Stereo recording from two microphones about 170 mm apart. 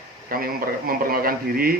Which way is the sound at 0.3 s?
60° right (ahead or behind).